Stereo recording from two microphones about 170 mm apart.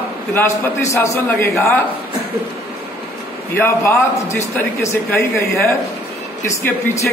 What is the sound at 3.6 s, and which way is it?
A man's voice, 15° left (ahead or behind).